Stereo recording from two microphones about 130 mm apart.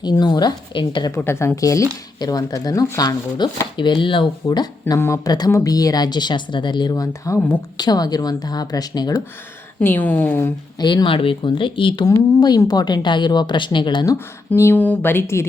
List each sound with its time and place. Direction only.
0.0 s a woman's voice: 30° left (ahead or behind)
1.1 s a woman's voice: 20° left (ahead or behind)
7.8 s speech: 30° left (ahead or behind)
9.8 s a woman's voice: 15° left (ahead or behind)
10.8 s a woman's voice: 40° left (ahead or behind)
12.0 s a woman's voice: 30° left (ahead or behind)